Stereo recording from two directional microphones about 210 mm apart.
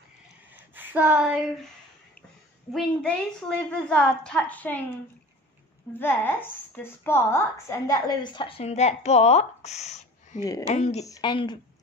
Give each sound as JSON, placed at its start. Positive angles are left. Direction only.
{"t": 0.5, "sound": "a sound", "side_deg": -10}
{"t": 2.7, "sound": "a woman's voice", "side_deg": 5}
{"t": 5.9, "sound": "a woman's voice", "side_deg": 10}
{"t": 11.1, "sound": "a woman's voice", "side_deg": 20}